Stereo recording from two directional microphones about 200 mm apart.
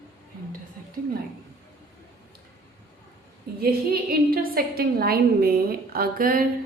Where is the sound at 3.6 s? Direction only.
50° right (ahead or behind).